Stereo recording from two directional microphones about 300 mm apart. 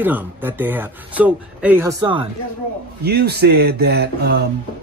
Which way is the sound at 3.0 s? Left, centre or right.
Right.